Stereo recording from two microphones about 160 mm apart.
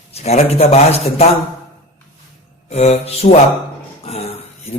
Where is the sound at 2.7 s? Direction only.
40° left (ahead or behind).